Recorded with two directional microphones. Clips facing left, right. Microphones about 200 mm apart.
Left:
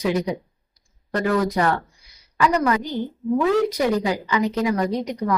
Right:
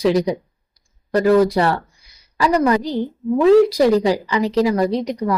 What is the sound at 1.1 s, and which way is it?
Speech, 35° right (ahead or behind).